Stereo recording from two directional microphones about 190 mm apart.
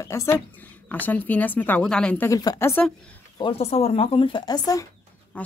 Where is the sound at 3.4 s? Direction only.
30° left (ahead or behind).